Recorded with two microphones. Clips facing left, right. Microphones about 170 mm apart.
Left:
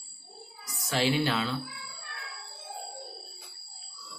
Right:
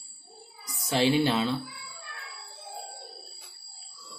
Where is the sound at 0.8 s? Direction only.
25° right (ahead or behind).